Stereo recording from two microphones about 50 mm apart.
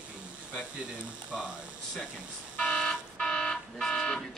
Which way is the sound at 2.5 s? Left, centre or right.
Centre.